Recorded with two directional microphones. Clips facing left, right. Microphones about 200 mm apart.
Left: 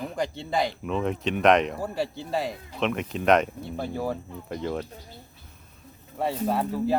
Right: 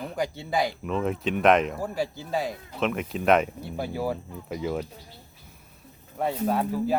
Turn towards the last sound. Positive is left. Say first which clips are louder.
# even
turn(degrees=0)  # may be behind; listen again after turning